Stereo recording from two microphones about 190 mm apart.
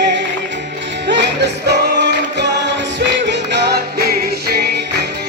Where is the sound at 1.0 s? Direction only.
65° right (ahead or behind).